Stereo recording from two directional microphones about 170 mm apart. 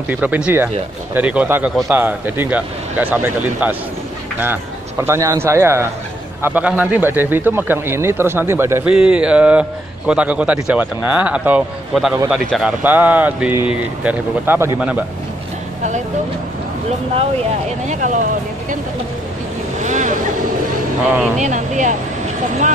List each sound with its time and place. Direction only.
0.1 s a man's voice: 10° right (ahead or behind)
5.0 s a man's voice: 15° right (ahead or behind)
17.8 s speech: 45° right (ahead or behind)
19.8 s speech: 45° right (ahead or behind)
21.4 s speech: 45° right (ahead or behind)